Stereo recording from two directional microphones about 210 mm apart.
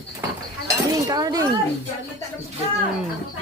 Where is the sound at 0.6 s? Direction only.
20° right (ahead or behind).